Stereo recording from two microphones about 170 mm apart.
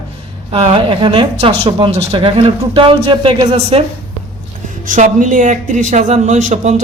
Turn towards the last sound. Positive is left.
turn(degrees=-45)  # may be behind; listen again after turning